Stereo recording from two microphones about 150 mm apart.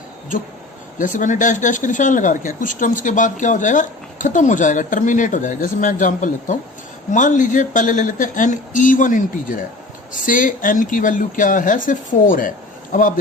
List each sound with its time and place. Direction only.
0.9 s speech: 60° left (ahead or behind)